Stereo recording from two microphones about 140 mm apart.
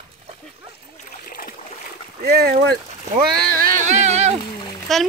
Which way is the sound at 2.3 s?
90° right.